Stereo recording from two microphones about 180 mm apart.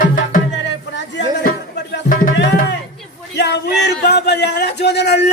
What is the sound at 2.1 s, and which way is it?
Speech, 50° left (ahead or behind).